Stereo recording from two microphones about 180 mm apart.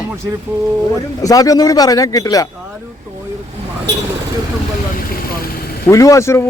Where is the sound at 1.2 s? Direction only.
20° left (ahead or behind).